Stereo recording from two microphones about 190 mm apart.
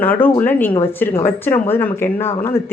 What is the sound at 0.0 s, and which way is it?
Speech, 10° left (ahead or behind).